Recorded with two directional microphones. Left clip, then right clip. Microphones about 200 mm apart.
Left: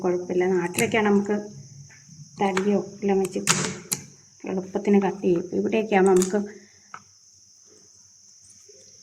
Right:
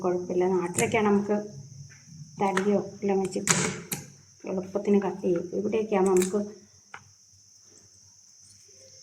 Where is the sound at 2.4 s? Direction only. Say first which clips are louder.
Left 2 dB; 15° left (ahead or behind).